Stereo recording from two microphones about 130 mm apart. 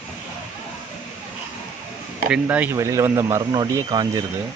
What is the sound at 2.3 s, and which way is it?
Speech, 10° right (ahead or behind).